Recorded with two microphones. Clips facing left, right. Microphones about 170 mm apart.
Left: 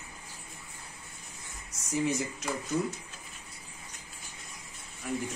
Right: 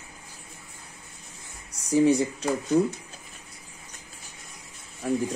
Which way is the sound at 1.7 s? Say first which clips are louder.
Right 10 dB; 35° right (ahead or behind).